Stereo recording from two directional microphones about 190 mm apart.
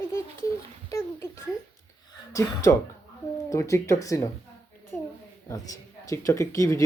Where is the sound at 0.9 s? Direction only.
15° left (ahead or behind).